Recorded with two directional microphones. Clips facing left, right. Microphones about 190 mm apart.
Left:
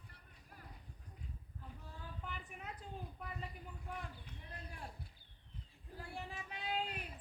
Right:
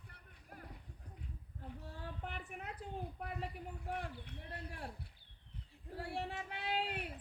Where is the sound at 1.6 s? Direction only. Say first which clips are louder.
Right 6 dB; 65° right (ahead or behind).